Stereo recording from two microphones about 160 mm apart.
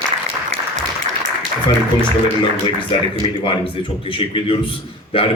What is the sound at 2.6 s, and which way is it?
Speech, 35° left (ahead or behind).